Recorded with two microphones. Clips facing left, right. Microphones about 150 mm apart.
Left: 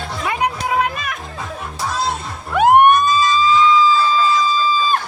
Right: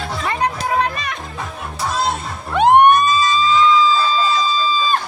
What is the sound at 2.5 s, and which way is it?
Music, 5° left (ahead or behind).